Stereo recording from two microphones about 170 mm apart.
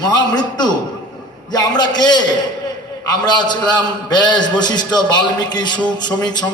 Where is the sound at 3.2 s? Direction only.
25° left (ahead or behind).